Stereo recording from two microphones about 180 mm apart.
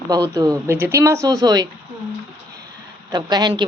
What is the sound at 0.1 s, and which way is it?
Speech, 20° right (ahead or behind).